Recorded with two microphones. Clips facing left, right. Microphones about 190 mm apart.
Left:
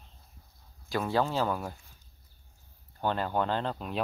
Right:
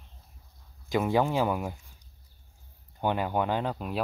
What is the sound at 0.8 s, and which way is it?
Speech, 20° right (ahead or behind).